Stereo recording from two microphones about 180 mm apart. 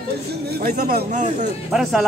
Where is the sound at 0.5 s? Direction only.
60° right (ahead or behind).